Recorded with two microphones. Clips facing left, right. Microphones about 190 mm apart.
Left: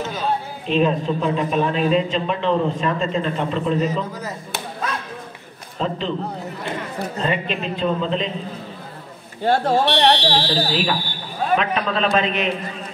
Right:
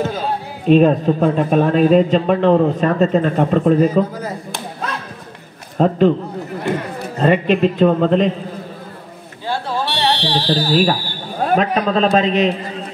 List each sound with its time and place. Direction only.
0.7 s speech: 45° right (ahead or behind)
5.8 s speech: 50° right (ahead or behind)
7.2 s a man's voice: 55° right (ahead or behind)
9.4 s speech: 45° left (ahead or behind)
9.8 s speech: 65° left (ahead or behind)
10.4 s a man's voice: 45° right (ahead or behind)